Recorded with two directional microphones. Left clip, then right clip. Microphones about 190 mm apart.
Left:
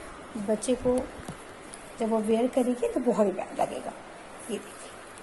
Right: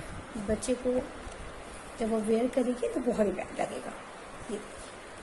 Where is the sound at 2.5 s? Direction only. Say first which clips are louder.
Left 3 dB; 15° left (ahead or behind).